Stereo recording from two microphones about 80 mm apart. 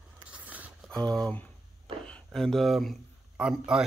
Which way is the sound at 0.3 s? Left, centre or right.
Centre.